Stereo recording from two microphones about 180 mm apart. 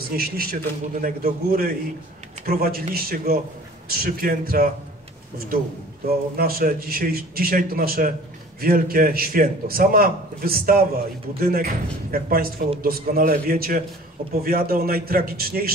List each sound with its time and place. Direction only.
0.1 s a man's voice: 55° right (ahead or behind)
6.3 s speech: 55° right (ahead or behind)